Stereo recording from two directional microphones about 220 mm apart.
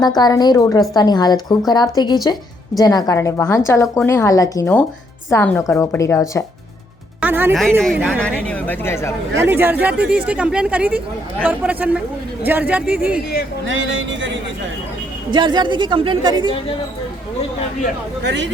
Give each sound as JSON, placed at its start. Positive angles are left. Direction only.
{"t": 0.0, "sound": "a woman's voice", "side_deg": 20}
{"t": 7.2, "sound": "speech", "side_deg": -10}
{"t": 7.8, "sound": "a woman's voice", "side_deg": 0}
{"t": 9.3, "sound": "speech", "side_deg": -10}
{"t": 13.7, "sound": "speech", "side_deg": -60}
{"t": 15.3, "sound": "a woman's voice", "side_deg": -20}
{"t": 18.2, "sound": "speech", "side_deg": -50}